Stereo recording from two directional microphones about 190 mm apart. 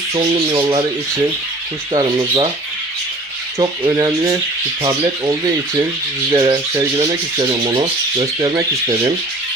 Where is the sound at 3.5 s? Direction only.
20° right (ahead or behind).